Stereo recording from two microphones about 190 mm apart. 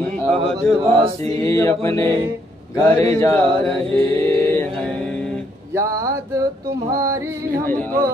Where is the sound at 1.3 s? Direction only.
15° left (ahead or behind).